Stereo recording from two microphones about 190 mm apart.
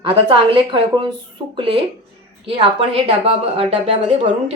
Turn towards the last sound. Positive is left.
turn(degrees=-35)  # may be behind; listen again after turning